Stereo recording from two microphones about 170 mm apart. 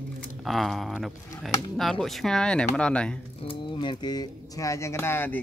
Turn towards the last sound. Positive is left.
turn(degrees=10)  # may be behind; listen again after turning